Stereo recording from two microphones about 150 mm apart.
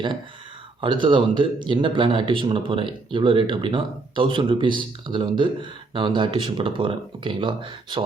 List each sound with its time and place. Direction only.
0.8 s speech: 35° right (ahead or behind)